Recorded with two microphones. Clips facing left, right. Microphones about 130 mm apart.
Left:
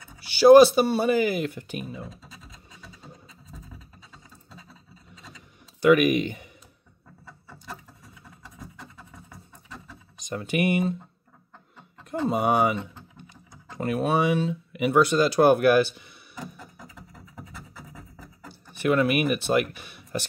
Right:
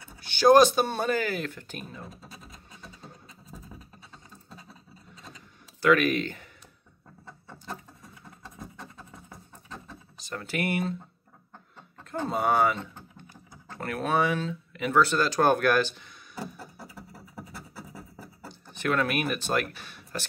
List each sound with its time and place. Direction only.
0.2 s speech: 5° left (ahead or behind)
5.8 s speech: 15° left (ahead or behind)
10.1 s speech: 15° left (ahead or behind)
12.0 s speech: 15° left (ahead or behind)
16.5 s music: 35° right (ahead or behind)
18.8 s speech: 10° left (ahead or behind)